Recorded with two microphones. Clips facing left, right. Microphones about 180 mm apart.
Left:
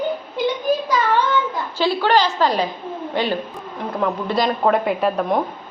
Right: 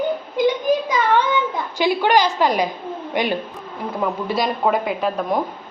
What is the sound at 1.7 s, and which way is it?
A woman's voice, 15° right (ahead or behind).